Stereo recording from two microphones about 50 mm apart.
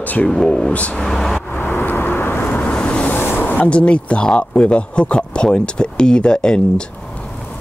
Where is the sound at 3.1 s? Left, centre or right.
Left.